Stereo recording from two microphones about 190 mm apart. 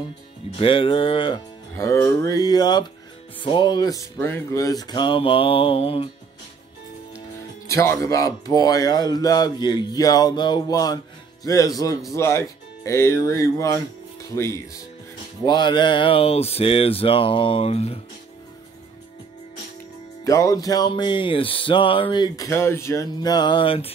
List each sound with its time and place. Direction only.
0.6 s music: 30° left (ahead or behind)
7.6 s music: 15° left (ahead or behind)
11.4 s speech: 20° left (ahead or behind)
15.4 s music: 25° left (ahead or behind)
20.2 s music: 15° left (ahead or behind)